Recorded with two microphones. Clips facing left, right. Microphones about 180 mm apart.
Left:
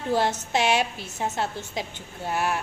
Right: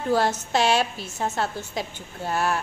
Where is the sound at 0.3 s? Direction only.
15° left (ahead or behind).